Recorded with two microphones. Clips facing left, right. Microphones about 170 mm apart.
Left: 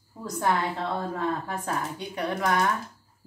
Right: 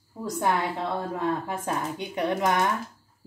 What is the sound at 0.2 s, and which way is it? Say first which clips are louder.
A woman's voice: right 1 dB; 15° right (ahead or behind).